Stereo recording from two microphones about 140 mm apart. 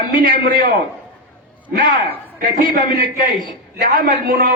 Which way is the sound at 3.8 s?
80° right.